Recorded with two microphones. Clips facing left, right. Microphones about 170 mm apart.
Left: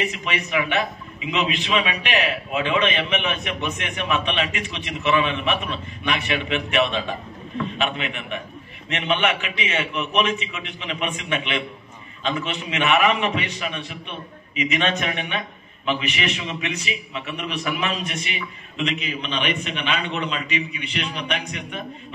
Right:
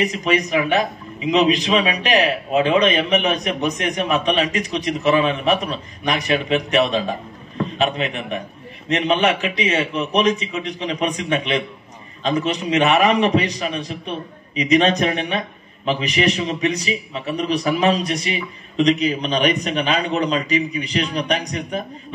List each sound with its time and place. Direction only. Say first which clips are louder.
0.0 s a man's voice: right 7 dB; 40° right (ahead or behind)